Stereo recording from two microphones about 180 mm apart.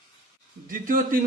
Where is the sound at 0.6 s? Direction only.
50° right (ahead or behind).